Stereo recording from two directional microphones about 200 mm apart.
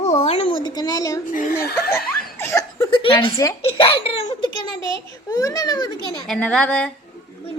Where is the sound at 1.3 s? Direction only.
40° left (ahead or behind).